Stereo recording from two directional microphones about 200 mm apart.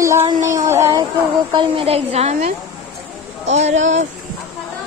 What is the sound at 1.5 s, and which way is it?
Speech, 25° right (ahead or behind).